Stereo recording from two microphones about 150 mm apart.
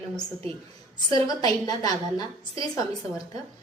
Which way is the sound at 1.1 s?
25° left (ahead or behind).